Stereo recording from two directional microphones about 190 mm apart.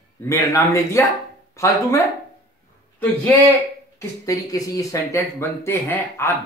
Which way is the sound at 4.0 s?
15° left (ahead or behind).